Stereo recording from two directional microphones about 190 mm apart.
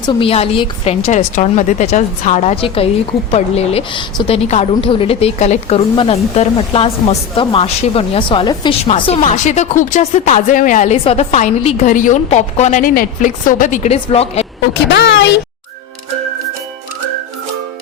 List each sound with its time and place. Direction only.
0.0 s a woman's voice: 25° left (ahead or behind)
14.7 s a woman's voice: 65° left (ahead or behind)